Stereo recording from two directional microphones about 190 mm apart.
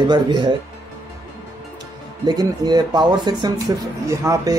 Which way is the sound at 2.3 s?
20° right (ahead or behind).